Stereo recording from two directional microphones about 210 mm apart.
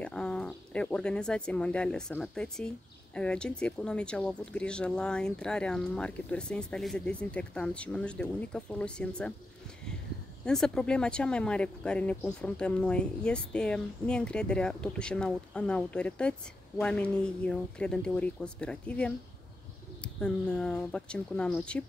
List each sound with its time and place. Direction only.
0.0 s speech: 5° left (ahead or behind)
10.4 s speech: 5° left (ahead or behind)